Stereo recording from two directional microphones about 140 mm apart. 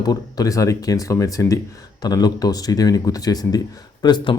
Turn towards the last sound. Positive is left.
turn(degrees=30)  # may be behind; listen again after turning